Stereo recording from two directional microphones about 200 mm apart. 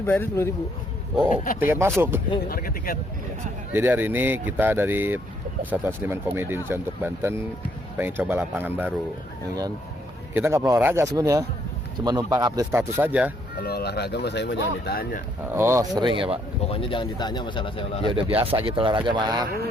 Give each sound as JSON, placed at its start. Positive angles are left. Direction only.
{"t": 0.0, "sound": "speech", "side_deg": 15}
{"t": 1.5, "sound": "speech", "side_deg": -10}
{"t": 2.5, "sound": "speech", "side_deg": 45}
{"t": 3.7, "sound": "speech", "side_deg": -10}
{"t": 10.3, "sound": "speech", "side_deg": -10}
{"t": 13.6, "sound": "speech", "side_deg": 50}
{"t": 15.5, "sound": "speech", "side_deg": -15}
{"t": 16.0, "sound": "speech", "side_deg": -25}
{"t": 16.6, "sound": "speech", "side_deg": 25}
{"t": 18.1, "sound": "speech", "side_deg": -30}